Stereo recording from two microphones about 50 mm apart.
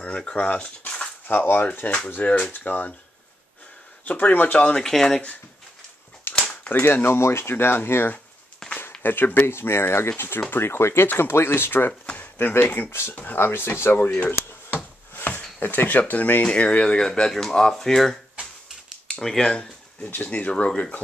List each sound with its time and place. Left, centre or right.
0.0 s speech: centre
1.2 s speech: left
4.0 s speech: left
4.6 s speech: centre
6.3 s a sound: left
6.7 s speech: left
8.6 s a sound: centre
9.0 s speech: left
14.7 s a sound: left
15.6 s speech: left
16.4 s speech: centre
19.2 s speech: centre
20.0 s speech: left